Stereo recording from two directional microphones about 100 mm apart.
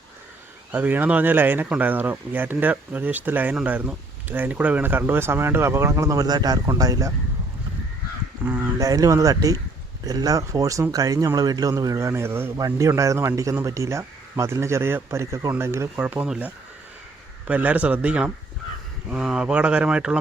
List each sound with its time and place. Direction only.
0.7 s speech: 20° right (ahead or behind)
6.2 s a man's voice: 40° right (ahead or behind)
8.4 s speech: 15° right (ahead or behind)
8.8 s a man's voice: 35° right (ahead or behind)
12.5 s a man's voice: 35° right (ahead or behind)
16.0 s speech: 15° right (ahead or behind)
17.5 s speech: 15° right (ahead or behind)